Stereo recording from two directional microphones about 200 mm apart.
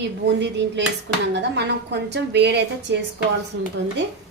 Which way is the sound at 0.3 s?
60° right (ahead or behind).